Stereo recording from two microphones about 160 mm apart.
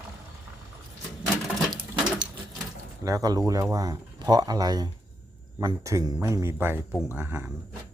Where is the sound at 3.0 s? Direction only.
20° right (ahead or behind).